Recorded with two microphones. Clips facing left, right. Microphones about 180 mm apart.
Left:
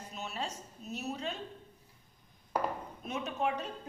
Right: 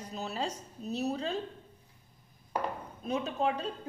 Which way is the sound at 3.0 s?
30° right (ahead or behind).